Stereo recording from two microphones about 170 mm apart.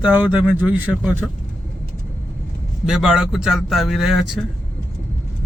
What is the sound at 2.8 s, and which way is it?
Speech, 5° right (ahead or behind).